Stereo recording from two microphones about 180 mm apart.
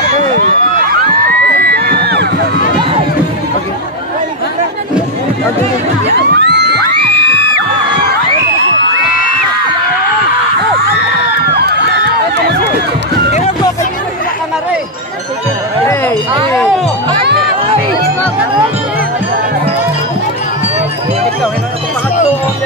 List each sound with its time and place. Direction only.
1.6 s music: 60° right (ahead or behind)
6.0 s music: 70° right (ahead or behind)
11.5 s crowd: 65° right (ahead or behind)
15.9 s music: 15° left (ahead or behind)
17.2 s music: 65° right (ahead or behind)